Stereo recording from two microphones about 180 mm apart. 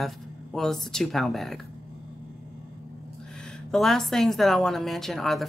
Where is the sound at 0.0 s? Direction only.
5° left (ahead or behind).